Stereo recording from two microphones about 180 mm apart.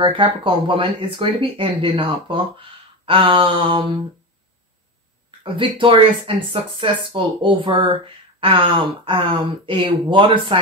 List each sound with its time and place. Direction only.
0.0 s speech: 30° right (ahead or behind)
5.4 s speech: 30° right (ahead or behind)